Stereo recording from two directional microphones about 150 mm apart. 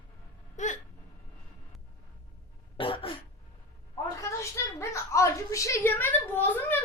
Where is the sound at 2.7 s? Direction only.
35° left (ahead or behind).